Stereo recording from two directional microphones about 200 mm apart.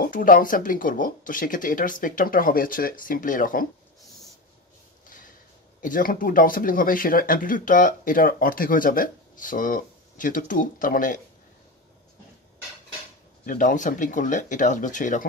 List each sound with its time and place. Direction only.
0.0 s speech: 45° left (ahead or behind)
5.8 s speech: 40° left (ahead or behind)
13.5 s speech: 40° left (ahead or behind)